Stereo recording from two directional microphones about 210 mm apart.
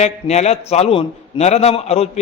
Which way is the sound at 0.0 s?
30° left (ahead or behind).